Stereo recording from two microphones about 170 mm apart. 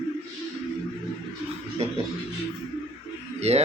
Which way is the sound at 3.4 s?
40° right (ahead or behind).